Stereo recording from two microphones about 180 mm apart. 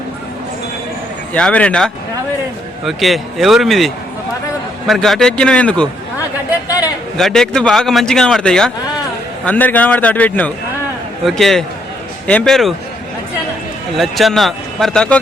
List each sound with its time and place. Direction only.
1.3 s speech: 5° left (ahead or behind)
6.7 s a sound: 20° left (ahead or behind)
7.2 s a man's voice: centre (ahead or behind)
13.9 s speech: centre (ahead or behind)